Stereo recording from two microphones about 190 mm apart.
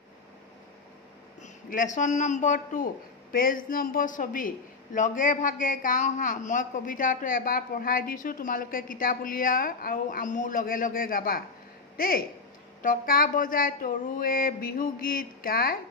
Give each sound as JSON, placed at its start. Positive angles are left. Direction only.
{"t": 1.4, "sound": "a man's voice", "side_deg": 40}